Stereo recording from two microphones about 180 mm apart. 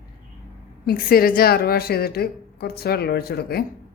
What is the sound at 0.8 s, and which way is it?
A woman's voice, 55° left (ahead or behind).